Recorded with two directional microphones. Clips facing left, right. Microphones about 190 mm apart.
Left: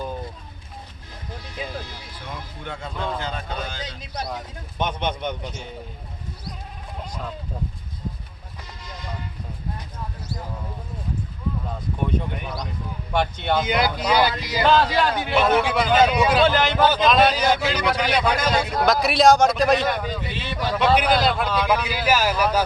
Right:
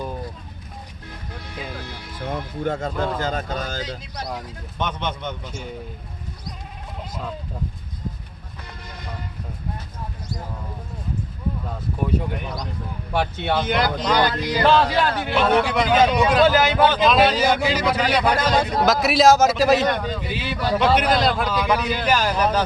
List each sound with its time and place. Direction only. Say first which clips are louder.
1.5 s speech: left 1 dB; 60° right (ahead or behind); by 3.8 s 45° right (ahead or behind)
3.8 s speech: even; 20° left (ahead or behind)
12.0 s a man's voice: right 2 dB; centre (ahead or behind)